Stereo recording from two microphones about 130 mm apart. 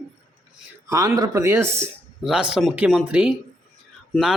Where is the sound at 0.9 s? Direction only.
25° right (ahead or behind).